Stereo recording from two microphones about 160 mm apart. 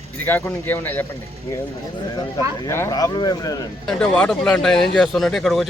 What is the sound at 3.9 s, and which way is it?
Speech, 5° left (ahead or behind).